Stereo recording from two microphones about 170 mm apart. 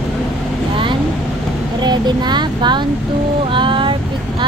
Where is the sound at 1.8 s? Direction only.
25° right (ahead or behind).